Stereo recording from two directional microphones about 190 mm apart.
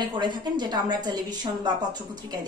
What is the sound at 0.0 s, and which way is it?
A woman's voice, 25° right (ahead or behind).